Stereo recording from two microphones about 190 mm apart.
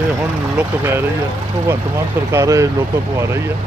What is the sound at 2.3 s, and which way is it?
Speech, 15° right (ahead or behind).